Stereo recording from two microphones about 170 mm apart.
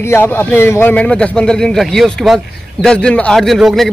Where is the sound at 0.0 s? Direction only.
15° left (ahead or behind).